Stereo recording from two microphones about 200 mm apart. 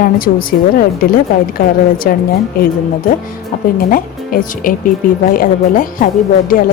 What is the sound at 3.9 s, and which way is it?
Speech, 45° left (ahead or behind).